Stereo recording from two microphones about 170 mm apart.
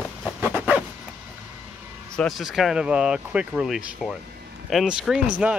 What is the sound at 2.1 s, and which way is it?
Speech, centre (ahead or behind).